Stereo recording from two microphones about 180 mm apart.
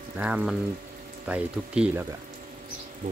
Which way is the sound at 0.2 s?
10° right (ahead or behind).